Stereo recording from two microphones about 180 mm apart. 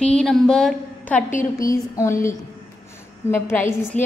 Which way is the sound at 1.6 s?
20° left (ahead or behind).